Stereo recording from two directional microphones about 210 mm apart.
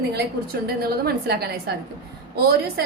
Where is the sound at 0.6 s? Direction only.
50° right (ahead or behind).